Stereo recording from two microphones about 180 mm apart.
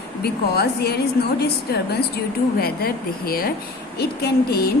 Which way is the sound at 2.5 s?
55° left (ahead or behind).